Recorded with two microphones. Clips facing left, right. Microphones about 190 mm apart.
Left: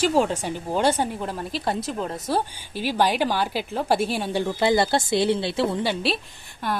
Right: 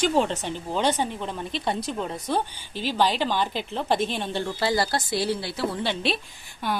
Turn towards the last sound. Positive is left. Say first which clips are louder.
# left 1 dB
turn(degrees=0)  # may be behind; listen again after turning